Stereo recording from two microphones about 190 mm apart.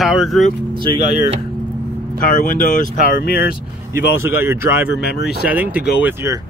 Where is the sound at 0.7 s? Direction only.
25° right (ahead or behind).